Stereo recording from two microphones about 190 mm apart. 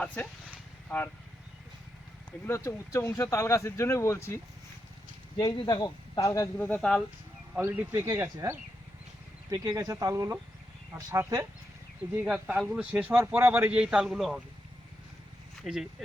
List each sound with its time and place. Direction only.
0.0 s speech: 5° left (ahead or behind)
2.4 s speech: 15° left (ahead or behind)
5.4 s speech: 20° left (ahead or behind); by 7.0 s 5° left (ahead or behind)
7.5 s a man's voice: 10° right (ahead or behind)
15.6 s speech: centre (ahead or behind)